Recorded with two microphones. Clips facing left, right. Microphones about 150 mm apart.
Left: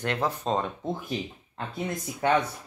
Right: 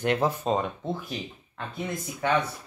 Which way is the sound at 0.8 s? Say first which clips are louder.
Left 1 dB; 15° left (ahead or behind).